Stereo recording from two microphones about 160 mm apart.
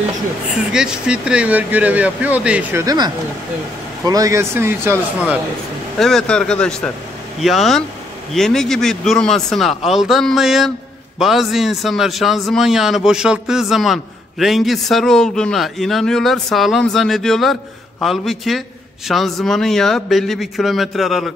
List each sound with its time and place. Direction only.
0.7 s speech: 5° right (ahead or behind)
2.8 s speech: 20° right (ahead or behind)
4.1 s speech: 20° right (ahead or behind)
5.9 s a man's voice: 5° left (ahead or behind)